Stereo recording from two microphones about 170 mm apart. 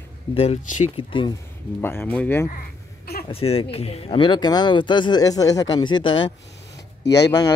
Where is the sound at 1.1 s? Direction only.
30° left (ahead or behind).